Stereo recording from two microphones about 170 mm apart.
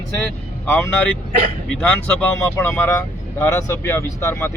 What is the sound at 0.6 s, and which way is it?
Speech, 10° left (ahead or behind).